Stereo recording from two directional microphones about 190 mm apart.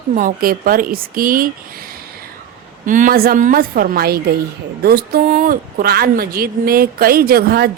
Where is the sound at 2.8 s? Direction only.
45° right (ahead or behind).